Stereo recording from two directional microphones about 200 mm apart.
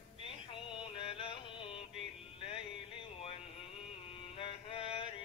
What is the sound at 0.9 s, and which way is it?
Music, 30° left (ahead or behind).